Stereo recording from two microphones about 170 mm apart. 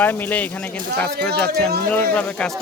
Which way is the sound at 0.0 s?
10° left (ahead or behind).